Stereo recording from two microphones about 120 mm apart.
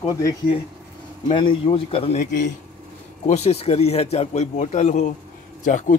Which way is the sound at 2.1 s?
90° left.